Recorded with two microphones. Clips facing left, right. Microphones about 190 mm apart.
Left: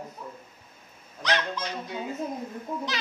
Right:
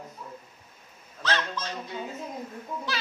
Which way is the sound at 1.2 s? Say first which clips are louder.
Left 1 dB; 15° left (ahead or behind).